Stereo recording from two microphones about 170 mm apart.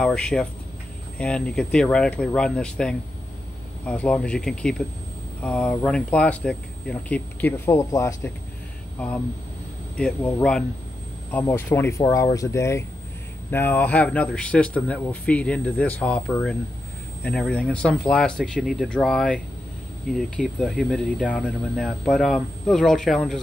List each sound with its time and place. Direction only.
0.0 s a man's voice: 5° left (ahead or behind)
9.9 s a man's voice: 5° left (ahead or behind)